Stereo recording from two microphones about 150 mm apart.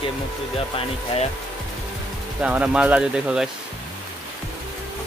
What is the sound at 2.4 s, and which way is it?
Speech, 5° right (ahead or behind).